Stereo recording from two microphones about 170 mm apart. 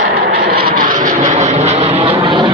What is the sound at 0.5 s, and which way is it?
Vehicle, 60° right (ahead or behind).